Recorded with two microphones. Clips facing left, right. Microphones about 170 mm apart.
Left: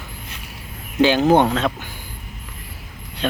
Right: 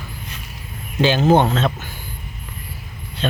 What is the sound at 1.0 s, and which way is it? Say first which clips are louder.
Speech: left 1 dB; 15° left (ahead or behind).